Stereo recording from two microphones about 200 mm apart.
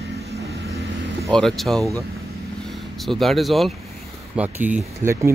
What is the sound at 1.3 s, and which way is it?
Speech, centre (ahead or behind).